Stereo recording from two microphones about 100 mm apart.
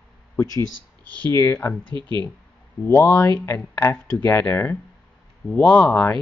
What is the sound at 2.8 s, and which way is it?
Speech, 25° left (ahead or behind).